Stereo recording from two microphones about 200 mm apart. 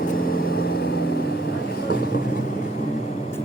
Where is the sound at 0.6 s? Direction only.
50° left (ahead or behind).